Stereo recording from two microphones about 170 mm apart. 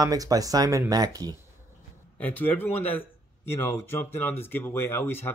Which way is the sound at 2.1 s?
10° left (ahead or behind).